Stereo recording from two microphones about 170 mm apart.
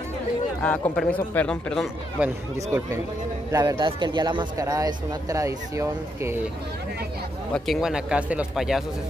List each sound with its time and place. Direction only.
0.6 s a man's voice: 10° left (ahead or behind)
2.1 s speech: 10° right (ahead or behind)
3.5 s speech: 25° right (ahead or behind)
7.5 s speech: centre (ahead or behind)